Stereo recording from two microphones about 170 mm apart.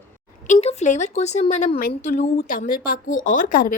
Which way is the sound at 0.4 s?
40° left (ahead or behind).